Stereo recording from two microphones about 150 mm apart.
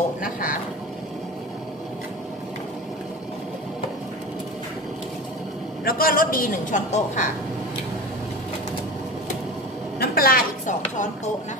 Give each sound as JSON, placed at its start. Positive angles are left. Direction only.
{"t": 0.2, "sound": "speech", "side_deg": 65}
{"t": 5.9, "sound": "a man's voice", "side_deg": 75}
{"t": 9.9, "sound": "chopping", "side_deg": 75}